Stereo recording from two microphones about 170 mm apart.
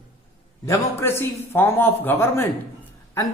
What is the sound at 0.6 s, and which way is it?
A man's voice, 15° left (ahead or behind).